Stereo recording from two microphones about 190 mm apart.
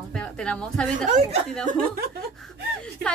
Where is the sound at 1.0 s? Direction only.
40° right (ahead or behind).